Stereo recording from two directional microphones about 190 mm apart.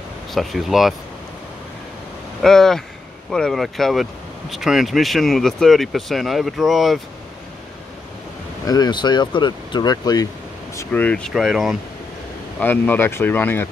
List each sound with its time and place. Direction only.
0.3 s speech: centre (ahead or behind)
2.4 s speech: centre (ahead or behind)
8.6 s speech: 20° left (ahead or behind)
10.8 s speech: 10° left (ahead or behind)